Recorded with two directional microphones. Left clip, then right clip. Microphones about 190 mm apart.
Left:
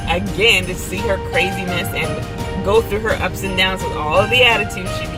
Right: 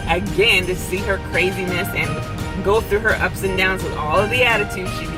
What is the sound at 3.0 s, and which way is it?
Speech, 15° left (ahead or behind).